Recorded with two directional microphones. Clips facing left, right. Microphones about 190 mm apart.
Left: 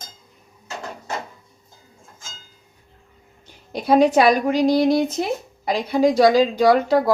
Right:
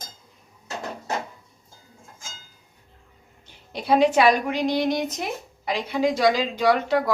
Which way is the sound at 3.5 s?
45° left (ahead or behind).